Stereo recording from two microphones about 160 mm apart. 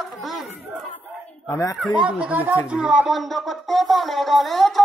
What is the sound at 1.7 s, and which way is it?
Speech, centre (ahead or behind).